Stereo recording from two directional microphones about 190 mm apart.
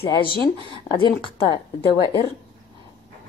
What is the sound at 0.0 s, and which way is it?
A woman's voice, 25° left (ahead or behind).